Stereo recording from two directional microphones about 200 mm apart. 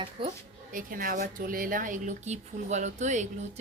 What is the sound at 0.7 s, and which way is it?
Speech, 45° right (ahead or behind).